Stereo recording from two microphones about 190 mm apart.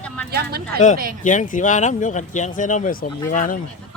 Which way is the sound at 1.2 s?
45° left (ahead or behind).